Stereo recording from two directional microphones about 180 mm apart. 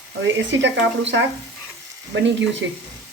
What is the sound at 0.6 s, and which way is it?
Speech, 90° right.